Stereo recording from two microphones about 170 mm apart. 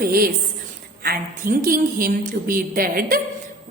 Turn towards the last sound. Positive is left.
turn(degrees=-60)  # may be behind; listen again after turning